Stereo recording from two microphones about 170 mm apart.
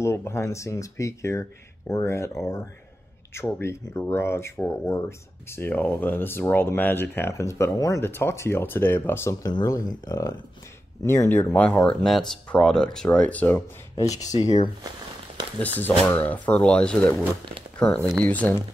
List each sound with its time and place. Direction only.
0.0 s speech: 15° left (ahead or behind)
3.3 s speech: 10° left (ahead or behind)
14.4 s speech: 40° left (ahead or behind)
15.8 s speech: 10° left (ahead or behind)